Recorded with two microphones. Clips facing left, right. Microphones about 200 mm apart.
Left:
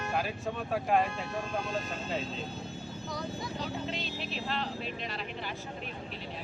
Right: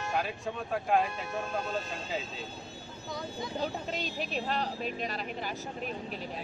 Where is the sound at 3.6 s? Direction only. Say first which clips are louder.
Right 4 dB; 45° right (ahead or behind).